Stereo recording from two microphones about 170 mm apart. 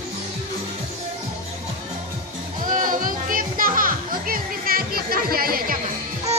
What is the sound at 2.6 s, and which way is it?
A child's voice, 50° right (ahead or behind).